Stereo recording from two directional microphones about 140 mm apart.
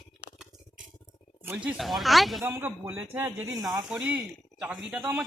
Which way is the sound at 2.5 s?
15° right (ahead or behind).